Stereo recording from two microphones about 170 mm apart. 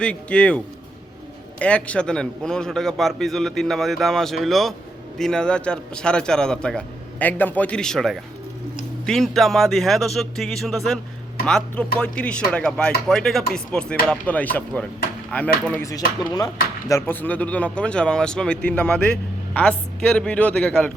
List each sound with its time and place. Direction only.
0.0 s a man's voice: 5° left (ahead or behind); by 16.5 s 20° left (ahead or behind)
16.9 s speech: 10° left (ahead or behind)